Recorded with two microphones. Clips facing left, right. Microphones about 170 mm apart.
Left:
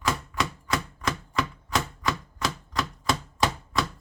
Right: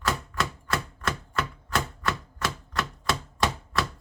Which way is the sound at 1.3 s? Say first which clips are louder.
Left 3 dB; centre (ahead or behind).